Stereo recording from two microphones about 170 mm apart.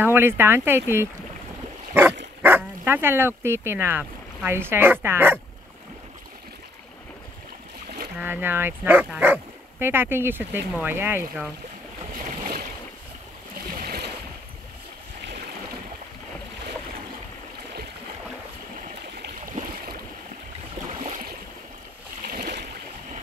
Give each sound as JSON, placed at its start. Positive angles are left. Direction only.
{"t": 0.0, "sound": "speech", "side_deg": -15}
{"t": 2.4, "sound": "speech", "side_deg": -10}
{"t": 8.2, "sound": "speech", "side_deg": -10}
{"t": 12.3, "sound": "boat", "side_deg": -50}
{"t": 13.7, "sound": "boat", "side_deg": -65}
{"t": 18.9, "sound": "stream", "side_deg": -60}
{"t": 22.2, "sound": "boat", "side_deg": -55}